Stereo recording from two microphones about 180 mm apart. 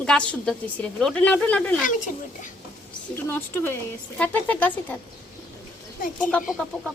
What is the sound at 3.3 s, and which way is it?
A woman's voice, 10° left (ahead or behind).